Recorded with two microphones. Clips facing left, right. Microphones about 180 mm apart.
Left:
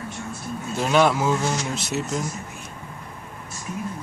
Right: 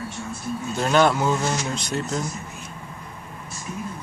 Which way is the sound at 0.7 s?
Centre (ahead or behind).